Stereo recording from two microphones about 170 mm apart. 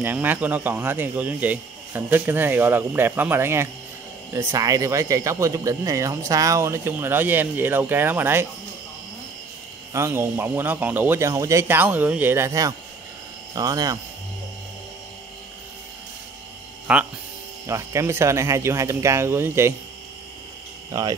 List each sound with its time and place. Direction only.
0.0 s speech: 10° right (ahead or behind)
9.9 s speech: 15° right (ahead or behind)
16.8 s speech: 5° right (ahead or behind)